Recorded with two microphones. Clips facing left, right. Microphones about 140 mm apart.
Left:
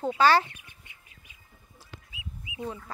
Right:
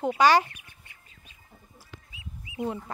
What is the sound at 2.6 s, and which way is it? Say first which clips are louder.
Speech: right 4 dB; 30° right (ahead or behind).